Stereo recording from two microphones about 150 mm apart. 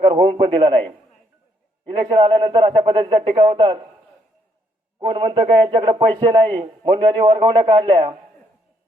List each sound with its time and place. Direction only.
0.0 s a man's voice: 30° right (ahead or behind)
1.9 s a man's voice: 35° right (ahead or behind)
4.9 s a man's voice: 30° right (ahead or behind)